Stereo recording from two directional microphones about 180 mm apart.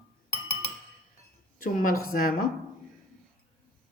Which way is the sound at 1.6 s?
50° left (ahead or behind).